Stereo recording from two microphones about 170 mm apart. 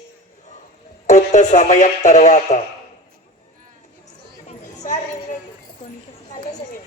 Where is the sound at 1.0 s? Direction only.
45° left (ahead or behind).